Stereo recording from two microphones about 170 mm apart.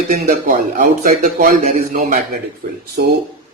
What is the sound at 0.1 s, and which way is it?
A man's voice, 55° right (ahead or behind).